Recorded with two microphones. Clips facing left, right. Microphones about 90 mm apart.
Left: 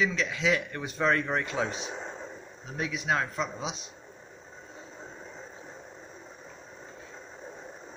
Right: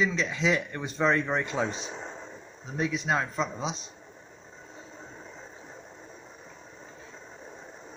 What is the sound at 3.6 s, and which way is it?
Speech, 35° right (ahead or behind).